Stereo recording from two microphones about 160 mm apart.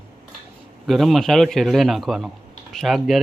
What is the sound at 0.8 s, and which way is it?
Speech, centre (ahead or behind).